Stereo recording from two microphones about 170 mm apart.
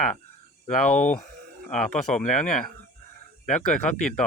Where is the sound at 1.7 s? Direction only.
5° left (ahead or behind).